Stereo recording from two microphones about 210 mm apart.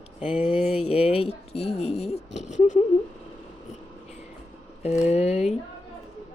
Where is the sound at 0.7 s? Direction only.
30° left (ahead or behind).